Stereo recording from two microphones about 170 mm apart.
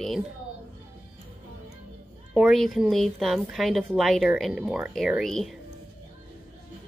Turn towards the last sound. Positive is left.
turn(degrees=0)  # may be behind; listen again after turning